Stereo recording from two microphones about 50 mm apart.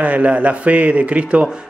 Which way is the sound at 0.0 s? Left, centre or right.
Right.